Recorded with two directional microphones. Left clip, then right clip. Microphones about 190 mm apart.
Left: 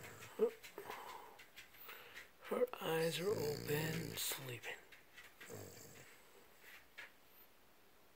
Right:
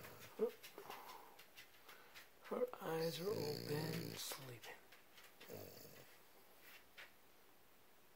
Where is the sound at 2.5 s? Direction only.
30° left (ahead or behind).